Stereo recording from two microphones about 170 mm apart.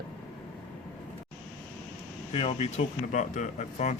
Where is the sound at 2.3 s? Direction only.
35° left (ahead or behind).